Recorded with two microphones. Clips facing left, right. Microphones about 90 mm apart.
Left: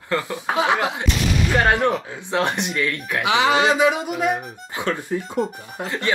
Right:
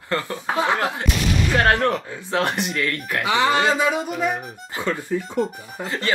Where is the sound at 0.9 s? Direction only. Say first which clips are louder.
Even; centre (ahead or behind).